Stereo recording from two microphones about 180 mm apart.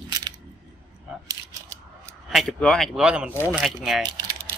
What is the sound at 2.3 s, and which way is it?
Speech, centre (ahead or behind).